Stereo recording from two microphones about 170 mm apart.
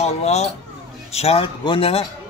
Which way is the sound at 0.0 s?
40° left (ahead or behind).